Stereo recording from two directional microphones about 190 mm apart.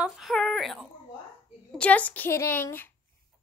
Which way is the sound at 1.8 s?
10° left (ahead or behind).